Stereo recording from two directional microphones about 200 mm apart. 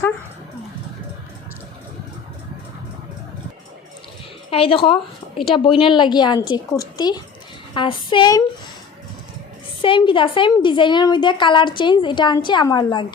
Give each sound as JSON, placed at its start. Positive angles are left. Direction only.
{"t": 4.5, "sound": "a woman's voice", "side_deg": 30}
{"t": 9.8, "sound": "a woman's voice", "side_deg": 25}